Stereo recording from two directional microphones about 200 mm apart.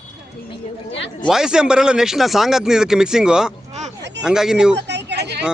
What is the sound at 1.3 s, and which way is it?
Speech, 5° right (ahead or behind).